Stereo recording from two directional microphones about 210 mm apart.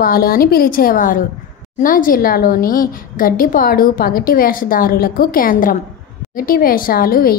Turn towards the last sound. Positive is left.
turn(degrees=45)  # may be behind; listen again after turning